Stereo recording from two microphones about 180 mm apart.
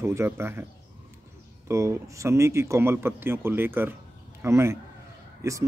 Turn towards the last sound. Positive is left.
turn(degrees=-15)  # may be behind; listen again after turning